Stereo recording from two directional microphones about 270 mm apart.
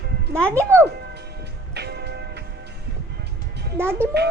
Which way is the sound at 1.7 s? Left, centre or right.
Right.